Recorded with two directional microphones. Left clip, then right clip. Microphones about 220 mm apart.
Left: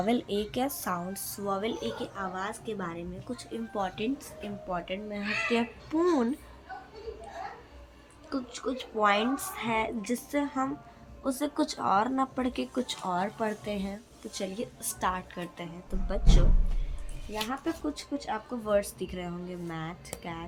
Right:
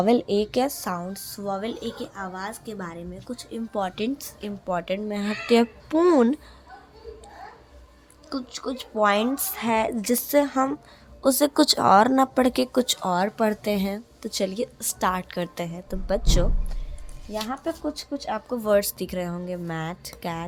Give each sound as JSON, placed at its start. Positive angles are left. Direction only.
{"t": 0.0, "sound": "speech", "side_deg": -30}
{"t": 8.3, "sound": "speech", "side_deg": -45}
{"t": 17.5, "sound": "speech", "side_deg": -40}